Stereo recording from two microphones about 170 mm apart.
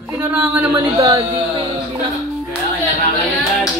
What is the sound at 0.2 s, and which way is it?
Speech, 10° right (ahead or behind).